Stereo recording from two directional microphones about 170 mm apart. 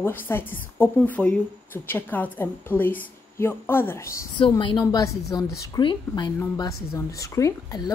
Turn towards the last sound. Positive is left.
turn(degrees=20)  # may be behind; listen again after turning